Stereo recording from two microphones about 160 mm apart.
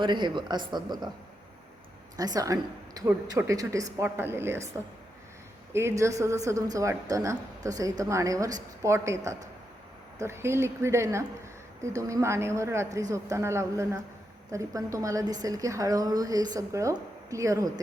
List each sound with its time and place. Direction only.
0.0 s a woman's voice: 30° right (ahead or behind)
2.1 s a woman's voice: 25° right (ahead or behind)
5.7 s a woman's voice: 15° right (ahead or behind)